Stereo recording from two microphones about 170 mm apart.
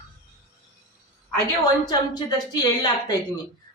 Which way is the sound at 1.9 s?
25° left (ahead or behind).